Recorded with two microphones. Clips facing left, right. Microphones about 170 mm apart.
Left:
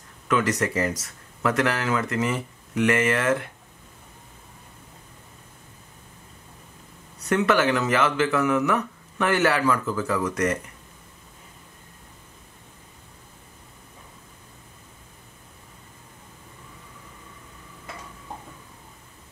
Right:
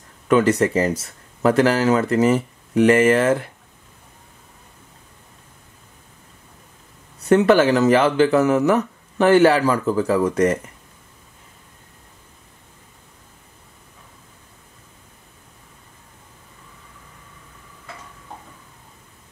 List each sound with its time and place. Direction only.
0.3 s speech: 30° right (ahead or behind)
7.2 s speech: 30° right (ahead or behind)